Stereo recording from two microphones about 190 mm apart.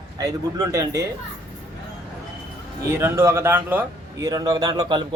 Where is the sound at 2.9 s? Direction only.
15° right (ahead or behind).